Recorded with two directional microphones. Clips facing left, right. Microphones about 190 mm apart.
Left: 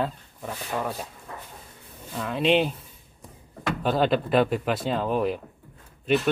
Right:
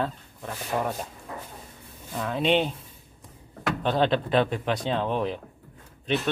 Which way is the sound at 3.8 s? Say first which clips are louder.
Left 1 dB; 5° left (ahead or behind).